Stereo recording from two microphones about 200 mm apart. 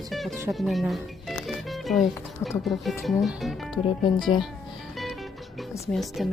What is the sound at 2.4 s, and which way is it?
Speech, centre (ahead or behind).